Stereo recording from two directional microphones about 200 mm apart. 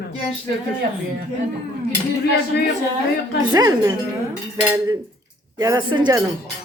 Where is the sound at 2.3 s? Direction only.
55° left (ahead or behind).